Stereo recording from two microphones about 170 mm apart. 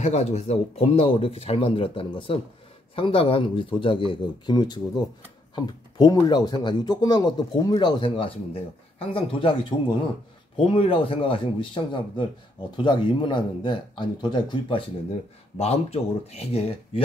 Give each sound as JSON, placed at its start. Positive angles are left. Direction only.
{"t": 0.0, "sound": "speech", "side_deg": 40}
{"t": 15.5, "sound": "speech", "side_deg": 40}